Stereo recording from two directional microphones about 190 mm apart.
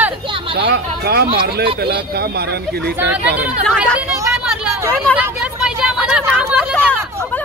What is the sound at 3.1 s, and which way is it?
Speech, 10° right (ahead or behind).